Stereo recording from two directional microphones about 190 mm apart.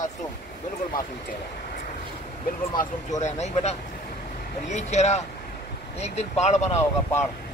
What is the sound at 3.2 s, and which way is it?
Speech, 35° left (ahead or behind).